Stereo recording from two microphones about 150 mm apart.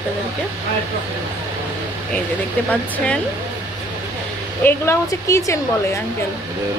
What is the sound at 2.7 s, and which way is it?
Speech, 10° left (ahead or behind).